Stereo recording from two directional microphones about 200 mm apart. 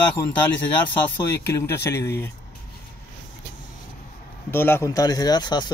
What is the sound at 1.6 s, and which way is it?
Speech, 15° left (ahead or behind).